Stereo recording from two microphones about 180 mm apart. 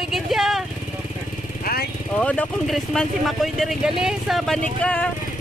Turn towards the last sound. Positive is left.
turn(degrees=5)  # may be behind; listen again after turning